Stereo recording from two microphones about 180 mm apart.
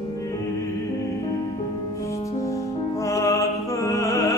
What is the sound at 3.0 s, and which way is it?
Music, 15° left (ahead or behind).